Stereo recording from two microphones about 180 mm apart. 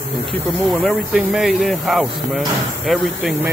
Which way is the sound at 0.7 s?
Centre (ahead or behind).